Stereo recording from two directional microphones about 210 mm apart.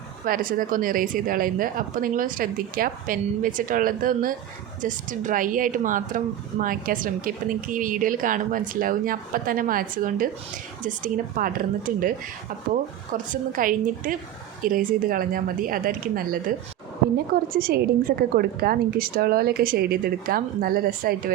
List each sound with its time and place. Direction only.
0.3 s a woman's voice: 40° right (ahead or behind)
13.2 s a woman's voice: 40° right (ahead or behind)
17.5 s a woman's voice: 45° right (ahead or behind)